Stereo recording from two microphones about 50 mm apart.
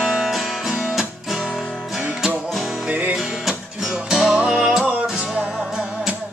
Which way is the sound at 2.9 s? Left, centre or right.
Right.